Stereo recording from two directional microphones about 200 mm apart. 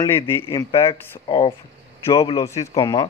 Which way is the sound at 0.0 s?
10° left (ahead or behind).